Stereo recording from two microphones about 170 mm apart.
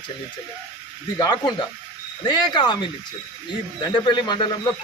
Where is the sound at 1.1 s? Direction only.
25° left (ahead or behind).